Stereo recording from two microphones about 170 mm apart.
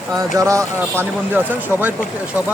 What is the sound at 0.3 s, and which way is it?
Speech, 20° right (ahead or behind).